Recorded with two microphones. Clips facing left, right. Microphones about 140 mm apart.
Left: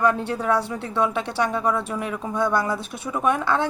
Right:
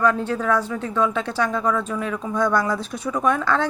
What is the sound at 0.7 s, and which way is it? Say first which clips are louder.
Speech: right 1 dB; 30° left (ahead or behind).